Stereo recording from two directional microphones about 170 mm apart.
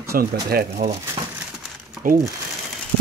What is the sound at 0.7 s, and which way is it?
Speech, 40° right (ahead or behind).